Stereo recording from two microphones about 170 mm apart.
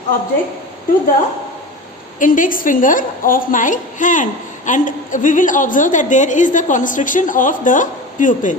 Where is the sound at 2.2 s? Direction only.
50° left (ahead or behind).